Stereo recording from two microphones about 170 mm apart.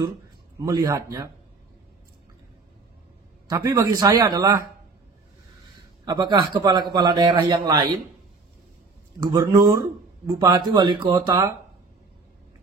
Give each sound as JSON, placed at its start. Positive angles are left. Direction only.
{"t": 0.6, "sound": "a man's voice", "side_deg": -25}
{"t": 3.4, "sound": "a man's voice", "side_deg": -20}
{"t": 6.0, "sound": "a man's voice", "side_deg": -25}
{"t": 9.2, "sound": "a man's voice", "side_deg": -20}